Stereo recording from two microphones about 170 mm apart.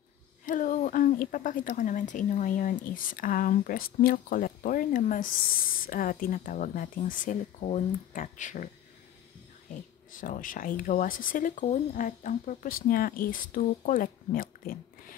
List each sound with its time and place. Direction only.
0.5 s a woman's voice: 50° left (ahead or behind)
10.1 s a woman's voice: 50° left (ahead or behind)